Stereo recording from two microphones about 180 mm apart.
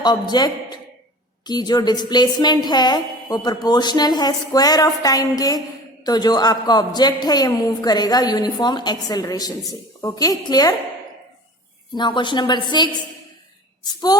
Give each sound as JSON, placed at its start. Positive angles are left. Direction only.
{"t": 0.0, "sound": "a man's voice", "side_deg": 20}
{"t": 11.9, "sound": "a woman's voice", "side_deg": 25}